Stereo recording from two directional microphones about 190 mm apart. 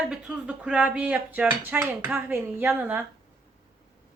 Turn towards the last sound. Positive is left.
turn(degrees=-10)  # may be behind; listen again after turning